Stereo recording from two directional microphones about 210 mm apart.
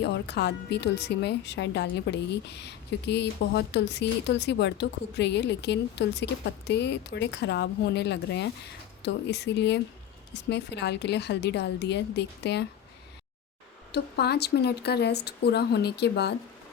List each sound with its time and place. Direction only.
0.0 s speech: 55° left (ahead or behind)
13.9 s speech: 50° left (ahead or behind)